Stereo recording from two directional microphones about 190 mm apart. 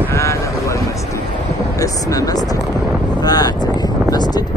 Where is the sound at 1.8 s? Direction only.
20° left (ahead or behind).